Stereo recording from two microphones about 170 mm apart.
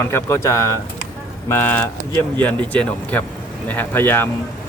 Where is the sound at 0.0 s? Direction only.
15° left (ahead or behind).